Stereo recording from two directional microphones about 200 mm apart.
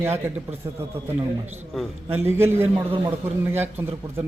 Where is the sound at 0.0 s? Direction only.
15° right (ahead or behind).